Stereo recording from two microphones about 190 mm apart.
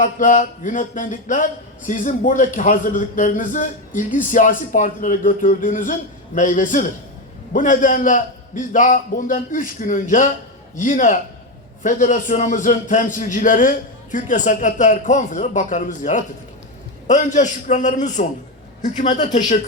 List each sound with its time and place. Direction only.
0.0 s a man's voice: 45° left (ahead or behind)